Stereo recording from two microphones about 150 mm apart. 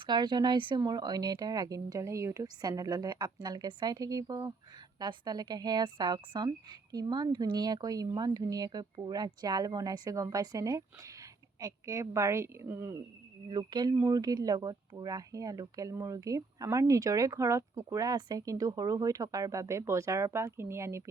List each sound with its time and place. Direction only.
0.0 s speech: 30° right (ahead or behind)
13.5 s speech: 30° right (ahead or behind)